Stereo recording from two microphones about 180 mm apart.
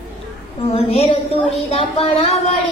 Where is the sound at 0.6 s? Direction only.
35° left (ahead or behind).